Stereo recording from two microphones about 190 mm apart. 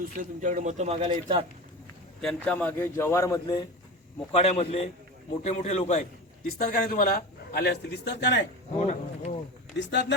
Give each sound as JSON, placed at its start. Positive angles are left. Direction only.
{"t": 0.0, "sound": "a man's voice", "side_deg": -45}
{"t": 2.2, "sound": "a man's voice", "side_deg": 5}
{"t": 4.3, "sound": "a man's voice", "side_deg": 35}
{"t": 6.6, "sound": "a man's voice", "side_deg": 45}
{"t": 8.8, "sound": "a man's voice", "side_deg": 35}
{"t": 9.7, "sound": "speech", "side_deg": 65}